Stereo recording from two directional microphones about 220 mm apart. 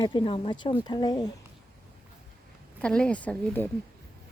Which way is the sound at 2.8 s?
5° left (ahead or behind).